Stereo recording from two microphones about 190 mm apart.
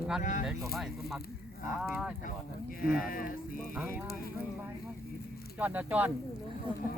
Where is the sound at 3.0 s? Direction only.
50° left (ahead or behind).